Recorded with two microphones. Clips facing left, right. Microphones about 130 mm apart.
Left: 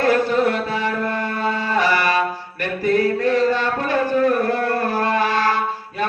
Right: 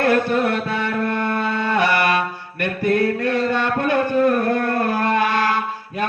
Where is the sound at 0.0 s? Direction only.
55° right (ahead or behind).